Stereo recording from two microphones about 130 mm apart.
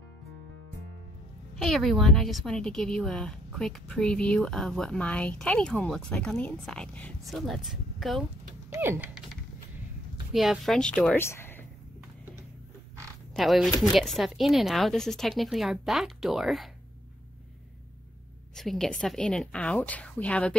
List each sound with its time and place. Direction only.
1.6 s a woman's voice: centre (ahead or behind)
7.2 s a woman's voice: centre (ahead or behind)
8.6 s a sound: 20° right (ahead or behind)
10.3 s a woman's voice: centre (ahead or behind)
11.1 s a sound: 20° left (ahead or behind)
13.3 s a woman's voice: centre (ahead or behind)
18.6 s a woman's voice: 5° left (ahead or behind)